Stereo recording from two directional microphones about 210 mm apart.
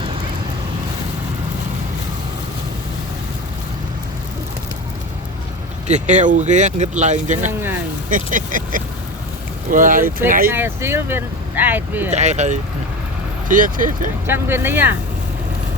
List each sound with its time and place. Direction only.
5.9 s speech: 35° right (ahead or behind)
10.5 s speech: 10° right (ahead or behind)
12.1 s speech: 35° right (ahead or behind)
14.3 s speech: 10° right (ahead or behind)